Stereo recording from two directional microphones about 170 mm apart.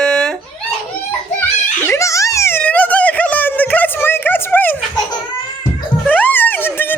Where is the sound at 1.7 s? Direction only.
15° left (ahead or behind).